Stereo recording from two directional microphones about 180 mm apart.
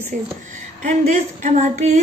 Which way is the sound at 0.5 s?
40° right (ahead or behind).